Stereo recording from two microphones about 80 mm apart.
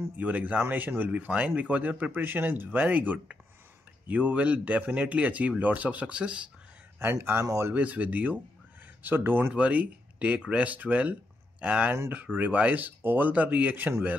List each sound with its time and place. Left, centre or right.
0.2 s speech: centre
7.0 s speech: right
7.7 s speech: centre